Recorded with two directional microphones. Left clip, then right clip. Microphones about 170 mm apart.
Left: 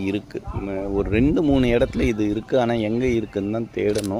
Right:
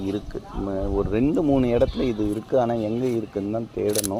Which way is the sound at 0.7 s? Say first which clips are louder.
Left 2 dB; 40° left (ahead or behind).